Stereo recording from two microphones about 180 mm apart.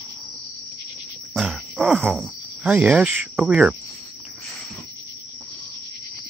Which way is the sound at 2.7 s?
10° right (ahead or behind).